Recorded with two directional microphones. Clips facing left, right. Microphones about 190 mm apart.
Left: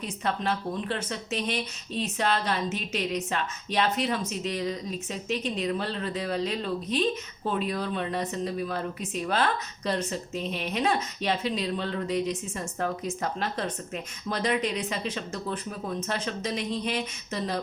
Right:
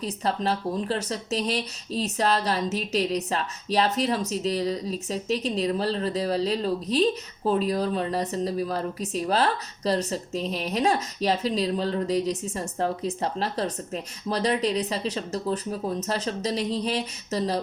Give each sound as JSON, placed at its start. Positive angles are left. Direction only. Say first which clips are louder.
{"t": 0.0, "sound": "speech", "louder": "right 3 dB", "side_deg": -35}